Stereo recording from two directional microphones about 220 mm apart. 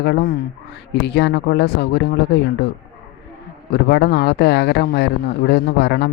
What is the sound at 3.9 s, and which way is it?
Speech, 50° left (ahead or behind).